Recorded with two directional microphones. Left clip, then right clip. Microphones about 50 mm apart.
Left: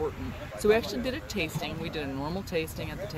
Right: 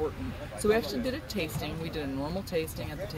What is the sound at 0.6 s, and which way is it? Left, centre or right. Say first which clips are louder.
Speech: left 2 dB; left.